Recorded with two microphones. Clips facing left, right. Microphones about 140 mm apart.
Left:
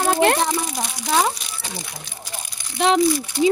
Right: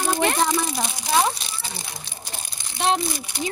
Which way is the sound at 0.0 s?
60° left (ahead or behind).